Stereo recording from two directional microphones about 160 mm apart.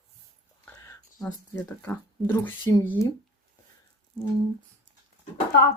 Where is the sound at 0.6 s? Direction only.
15° left (ahead or behind).